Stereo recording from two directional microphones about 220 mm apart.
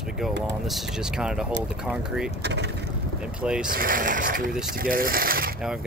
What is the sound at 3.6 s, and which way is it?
Speech, 40° right (ahead or behind).